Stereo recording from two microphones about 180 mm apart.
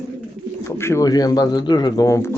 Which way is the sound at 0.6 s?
15° left (ahead or behind).